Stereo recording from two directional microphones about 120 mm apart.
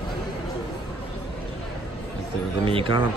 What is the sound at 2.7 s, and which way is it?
Speech, 45° right (ahead or behind).